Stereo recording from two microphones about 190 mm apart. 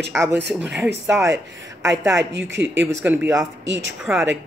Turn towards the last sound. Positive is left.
turn(degrees=0)  # may be behind; listen again after turning